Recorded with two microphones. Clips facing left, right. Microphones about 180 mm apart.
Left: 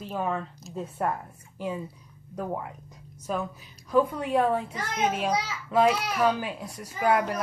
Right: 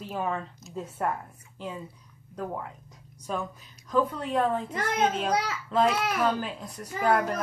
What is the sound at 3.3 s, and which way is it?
A woman's voice, 5° left (ahead or behind).